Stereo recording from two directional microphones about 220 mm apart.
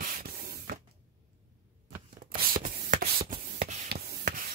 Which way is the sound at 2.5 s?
40° right (ahead or behind).